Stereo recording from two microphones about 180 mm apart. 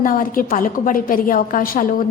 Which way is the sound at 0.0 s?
50° left (ahead or behind).